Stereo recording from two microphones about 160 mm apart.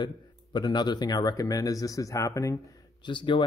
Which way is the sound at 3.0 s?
30° left (ahead or behind).